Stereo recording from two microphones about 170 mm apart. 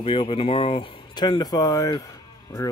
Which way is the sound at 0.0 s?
30° left (ahead or behind).